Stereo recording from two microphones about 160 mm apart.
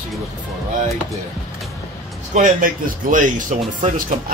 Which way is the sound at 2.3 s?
55° right (ahead or behind).